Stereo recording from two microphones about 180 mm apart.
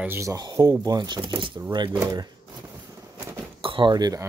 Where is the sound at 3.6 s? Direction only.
25° right (ahead or behind).